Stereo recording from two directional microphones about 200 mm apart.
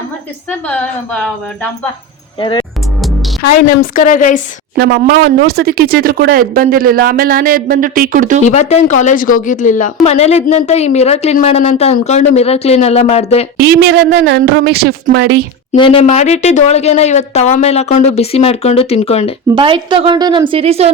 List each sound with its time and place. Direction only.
0.7 s a woman's voice: 5° left (ahead or behind)
2.4 s speech: 25° left (ahead or behind)
3.9 s a woman's voice: 40° left (ahead or behind)
4.8 s speech: 50° right (ahead or behind)
8.4 s a woman's voice: 35° left (ahead or behind)
13.6 s a woman's voice: 55° right (ahead or behind)
15.8 s a woman's voice: 30° left (ahead or behind)
19.5 s a woman's voice: 25° right (ahead or behind)